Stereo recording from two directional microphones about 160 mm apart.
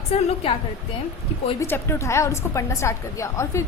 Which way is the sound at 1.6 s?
15° left (ahead or behind).